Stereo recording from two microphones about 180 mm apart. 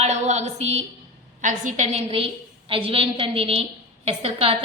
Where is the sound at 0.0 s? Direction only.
40° right (ahead or behind).